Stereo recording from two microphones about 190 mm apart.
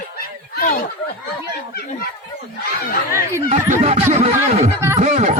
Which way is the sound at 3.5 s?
35° right (ahead or behind).